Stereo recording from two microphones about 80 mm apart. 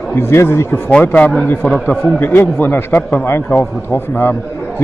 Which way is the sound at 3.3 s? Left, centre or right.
Left.